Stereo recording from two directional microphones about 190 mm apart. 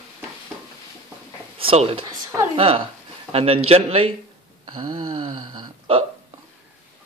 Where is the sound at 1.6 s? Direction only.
30° right (ahead or behind).